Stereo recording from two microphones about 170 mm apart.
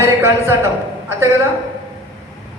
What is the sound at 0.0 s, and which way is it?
Speech, 15° right (ahead or behind).